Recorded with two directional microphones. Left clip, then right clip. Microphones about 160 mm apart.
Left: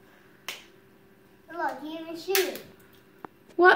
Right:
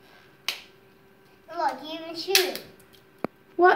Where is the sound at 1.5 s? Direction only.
5° left (ahead or behind).